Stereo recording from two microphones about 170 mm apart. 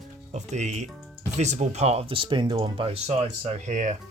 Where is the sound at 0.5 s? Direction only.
45° right (ahead or behind).